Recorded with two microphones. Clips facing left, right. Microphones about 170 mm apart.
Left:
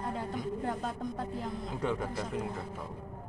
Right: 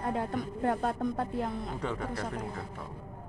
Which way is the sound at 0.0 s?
65° right (ahead or behind).